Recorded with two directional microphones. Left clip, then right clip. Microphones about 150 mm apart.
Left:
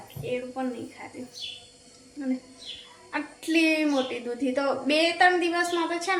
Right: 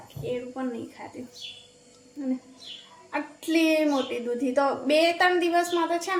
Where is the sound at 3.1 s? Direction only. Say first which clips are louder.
Even; 15° right (ahead or behind).